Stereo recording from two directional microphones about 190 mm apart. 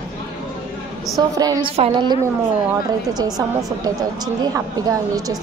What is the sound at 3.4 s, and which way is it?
Speech, 20° right (ahead or behind).